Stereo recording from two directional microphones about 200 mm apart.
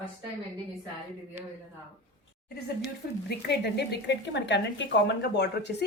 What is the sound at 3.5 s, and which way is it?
Speech, 55° left (ahead or behind).